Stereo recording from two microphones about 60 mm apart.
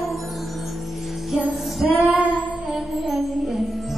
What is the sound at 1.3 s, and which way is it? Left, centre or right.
Music, centre.